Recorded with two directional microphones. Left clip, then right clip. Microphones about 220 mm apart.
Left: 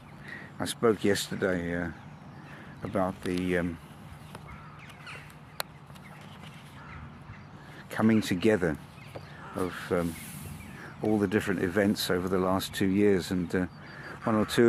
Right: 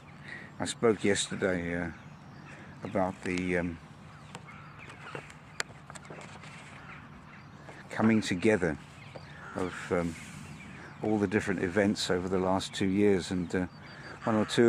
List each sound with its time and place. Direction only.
0.3 s speech: 5° left (ahead or behind)
7.9 s speech: 10° left (ahead or behind)